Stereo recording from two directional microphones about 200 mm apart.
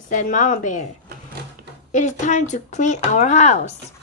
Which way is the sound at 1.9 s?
40° left (ahead or behind).